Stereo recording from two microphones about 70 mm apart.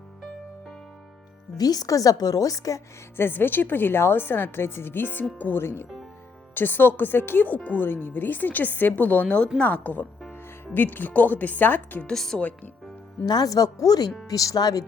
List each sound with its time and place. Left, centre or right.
1.5 s a woman's voice: left
3.2 s a woman's voice: left
12.0 s speech: centre
13.2 s a woman's voice: left